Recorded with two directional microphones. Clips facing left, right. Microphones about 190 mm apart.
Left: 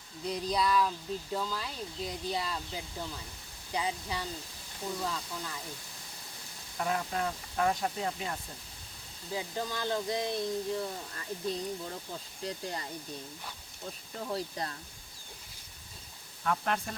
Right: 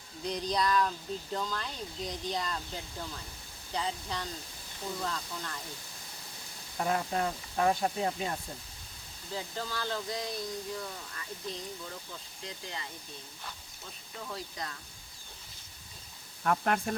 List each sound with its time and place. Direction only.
0.3 s speech: 5° left (ahead or behind)
6.7 s speech: 35° right (ahead or behind)
9.3 s speech: 15° left (ahead or behind); by 11.3 s 30° left (ahead or behind)
12.5 s speech: 40° left (ahead or behind)
14.2 s speech: 35° left (ahead or behind)
16.4 s speech: 50° right (ahead or behind)